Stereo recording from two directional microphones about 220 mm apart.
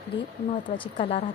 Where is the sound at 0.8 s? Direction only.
25° left (ahead or behind).